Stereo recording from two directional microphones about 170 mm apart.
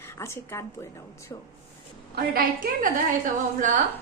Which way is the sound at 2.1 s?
60° right (ahead or behind).